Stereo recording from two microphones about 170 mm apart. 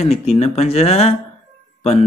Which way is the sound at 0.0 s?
35° left (ahead or behind).